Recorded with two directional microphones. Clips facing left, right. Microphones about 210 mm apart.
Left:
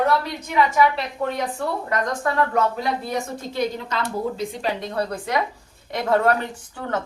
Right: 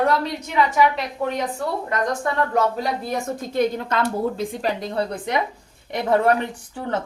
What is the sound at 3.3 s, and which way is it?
Speech, 50° right (ahead or behind).